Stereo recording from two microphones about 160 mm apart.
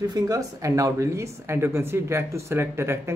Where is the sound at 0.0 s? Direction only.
20° right (ahead or behind).